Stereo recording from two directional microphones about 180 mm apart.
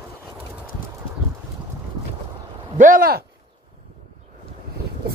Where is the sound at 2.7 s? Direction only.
50° right (ahead or behind).